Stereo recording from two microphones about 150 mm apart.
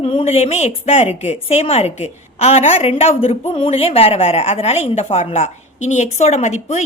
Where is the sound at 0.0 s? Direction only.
40° left (ahead or behind).